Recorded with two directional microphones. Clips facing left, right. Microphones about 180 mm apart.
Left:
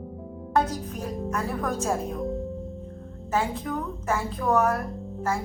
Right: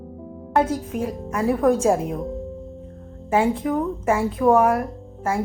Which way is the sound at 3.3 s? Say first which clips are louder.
Right 7 dB; 25° right (ahead or behind).